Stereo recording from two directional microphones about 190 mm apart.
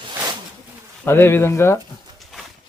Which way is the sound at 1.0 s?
10° left (ahead or behind).